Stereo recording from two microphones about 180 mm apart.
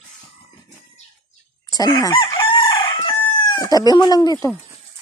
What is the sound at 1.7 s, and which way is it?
Chicken, 20° left (ahead or behind).